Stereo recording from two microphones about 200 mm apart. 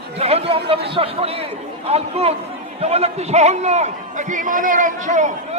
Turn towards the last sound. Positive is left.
turn(degrees=-40)  # may be behind; listen again after turning